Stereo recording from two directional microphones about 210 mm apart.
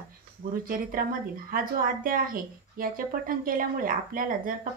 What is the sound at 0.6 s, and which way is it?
Speech, 40° right (ahead or behind).